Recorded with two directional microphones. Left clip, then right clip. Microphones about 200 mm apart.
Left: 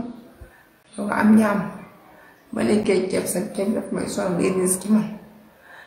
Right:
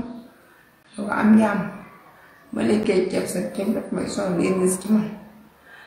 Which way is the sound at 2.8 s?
15° left (ahead or behind).